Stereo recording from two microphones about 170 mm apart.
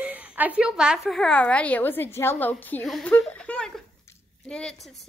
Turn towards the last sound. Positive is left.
turn(degrees=5)  # may be behind; listen again after turning